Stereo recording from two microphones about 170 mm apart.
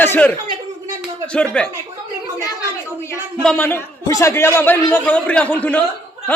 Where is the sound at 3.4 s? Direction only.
5° left (ahead or behind).